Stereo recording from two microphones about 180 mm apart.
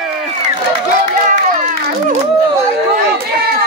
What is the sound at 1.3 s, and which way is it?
Run, 40° right (ahead or behind).